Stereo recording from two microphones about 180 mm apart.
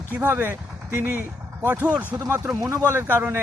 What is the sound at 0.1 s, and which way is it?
A man's voice, 10° right (ahead or behind).